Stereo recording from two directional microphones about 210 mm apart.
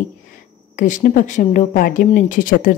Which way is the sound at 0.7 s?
35° left (ahead or behind).